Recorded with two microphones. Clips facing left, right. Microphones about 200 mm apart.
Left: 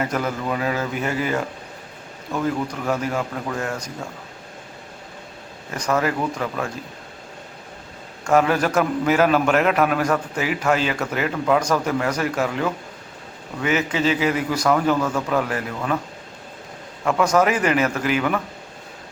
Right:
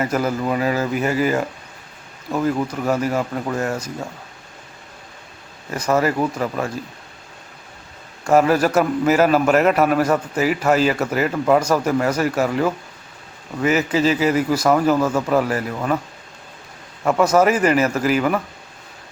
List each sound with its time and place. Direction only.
0.0 s a man's voice: 5° right (ahead or behind)
3.1 s a man's voice: 5° right (ahead or behind)
5.7 s a man's voice: 5° right (ahead or behind)
8.3 s a man's voice: 5° right (ahead or behind)
10.3 s a man's voice: 40° right (ahead or behind)
10.8 s a man's voice: 5° right (ahead or behind)
17.0 s a man's voice: 5° right (ahead or behind)